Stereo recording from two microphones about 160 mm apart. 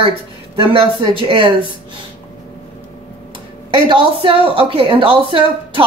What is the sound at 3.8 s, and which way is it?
A woman's voice, 35° right (ahead or behind).